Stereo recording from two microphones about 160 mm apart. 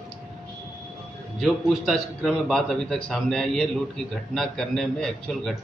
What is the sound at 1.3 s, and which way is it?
A man's voice, centre (ahead or behind).